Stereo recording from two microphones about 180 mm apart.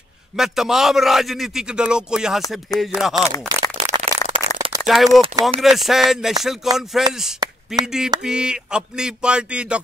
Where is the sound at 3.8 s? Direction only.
35° right (ahead or behind).